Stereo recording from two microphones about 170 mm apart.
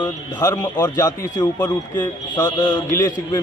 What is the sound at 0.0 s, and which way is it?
A man's voice, 20° left (ahead or behind).